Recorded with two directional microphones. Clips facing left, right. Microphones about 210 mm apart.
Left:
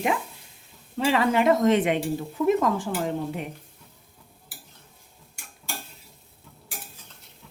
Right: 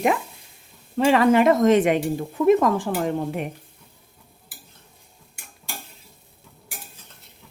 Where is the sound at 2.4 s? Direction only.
80° right.